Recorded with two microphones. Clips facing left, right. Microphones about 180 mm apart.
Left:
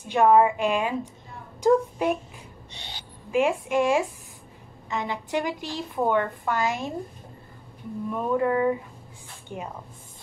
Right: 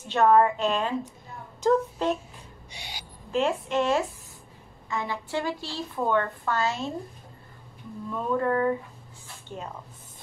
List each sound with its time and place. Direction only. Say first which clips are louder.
0.1 s a woman's voice: left 2 dB; 10° left (ahead or behind)
2.7 s owl: right 2 dB; 10° right (ahead or behind)
3.3 s a woman's voice: left 3 dB; 10° left (ahead or behind)
8.1 s a woman's voice: left 2 dB; 15° left (ahead or behind)